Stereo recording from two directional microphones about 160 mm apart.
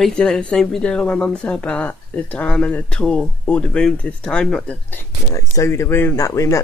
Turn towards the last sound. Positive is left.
turn(degrees=20)  # may be behind; listen again after turning